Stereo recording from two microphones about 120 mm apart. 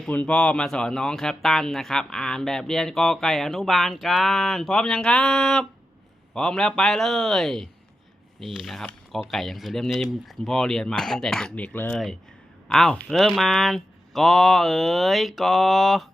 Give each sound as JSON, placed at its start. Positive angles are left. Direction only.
{"t": 0.0, "sound": "speech", "side_deg": 10}